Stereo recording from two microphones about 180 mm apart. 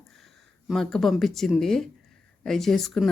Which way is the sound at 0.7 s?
Centre (ahead or behind).